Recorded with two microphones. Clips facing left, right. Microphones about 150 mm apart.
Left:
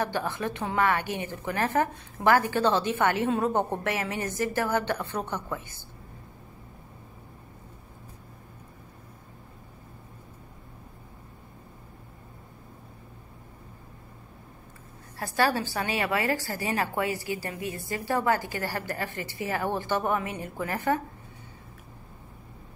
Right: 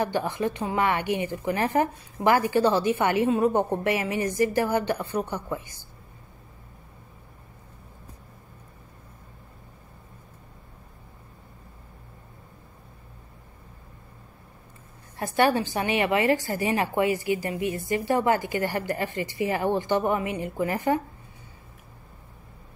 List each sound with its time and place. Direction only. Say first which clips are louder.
0.0 s a woman's voice: right 3 dB; 15° right (ahead or behind)
15.1 s a woman's voice: right 4 dB; 20° right (ahead or behind)